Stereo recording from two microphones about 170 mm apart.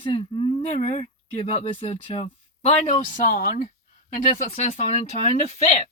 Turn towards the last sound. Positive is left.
turn(degrees=40)  # may be behind; listen again after turning